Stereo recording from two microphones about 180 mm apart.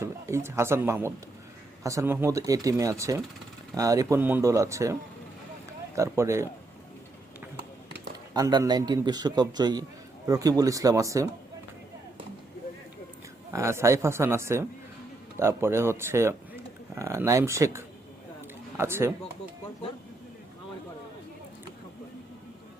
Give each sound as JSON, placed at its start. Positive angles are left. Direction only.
{"t": 0.0, "sound": "speech", "side_deg": -15}
{"t": 6.0, "sound": "speech", "side_deg": -15}
{"t": 8.3, "sound": "a man's voice", "side_deg": -20}
{"t": 13.5, "sound": "speech", "side_deg": -15}